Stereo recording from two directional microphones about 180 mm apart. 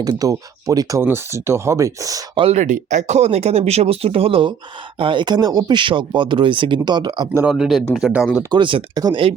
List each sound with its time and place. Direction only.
0.0 s speech: 20° right (ahead or behind)
2.4 s speech: 40° right (ahead or behind)
7.4 s speech: centre (ahead or behind)
8.4 s speech: 25° right (ahead or behind)